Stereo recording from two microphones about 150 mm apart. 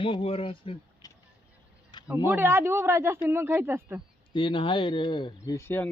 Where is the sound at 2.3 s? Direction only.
15° right (ahead or behind).